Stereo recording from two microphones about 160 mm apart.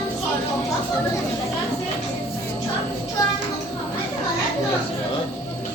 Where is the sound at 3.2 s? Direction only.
25° left (ahead or behind).